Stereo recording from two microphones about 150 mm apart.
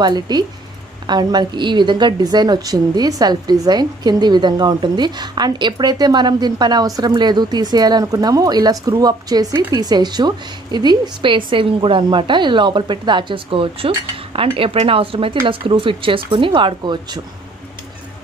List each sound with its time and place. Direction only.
0.0 s a woman's voice: 30° right (ahead or behind)